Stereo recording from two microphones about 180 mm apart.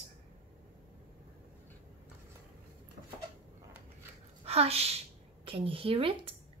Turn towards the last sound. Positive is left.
turn(degrees=-30)  # may be behind; listen again after turning